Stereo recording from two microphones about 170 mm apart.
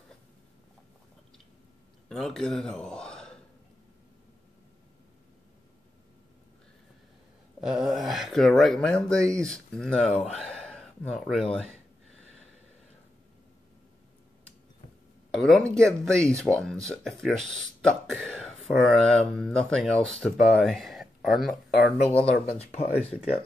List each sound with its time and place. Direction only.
2.0 s speech: centre (ahead or behind)
7.6 s speech: 5° right (ahead or behind)
15.3 s speech: 5° left (ahead or behind)
22.6 s speech: 35° left (ahead or behind)